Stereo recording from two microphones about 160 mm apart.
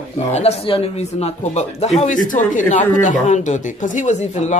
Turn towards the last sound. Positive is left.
turn(degrees=45)  # may be behind; listen again after turning